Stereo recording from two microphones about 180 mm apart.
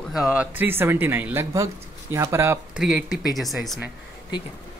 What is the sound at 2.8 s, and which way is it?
Speech, centre (ahead or behind).